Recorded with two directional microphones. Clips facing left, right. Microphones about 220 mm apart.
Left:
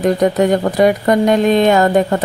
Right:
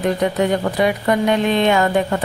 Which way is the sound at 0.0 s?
40° left (ahead or behind).